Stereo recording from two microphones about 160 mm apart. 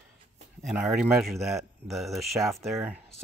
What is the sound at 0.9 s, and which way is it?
Speech, centre (ahead or behind).